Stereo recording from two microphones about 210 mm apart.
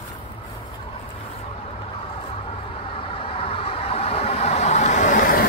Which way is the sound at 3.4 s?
25° left (ahead or behind).